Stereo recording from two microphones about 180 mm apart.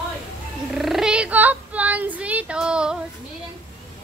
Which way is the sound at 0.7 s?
Centre (ahead or behind).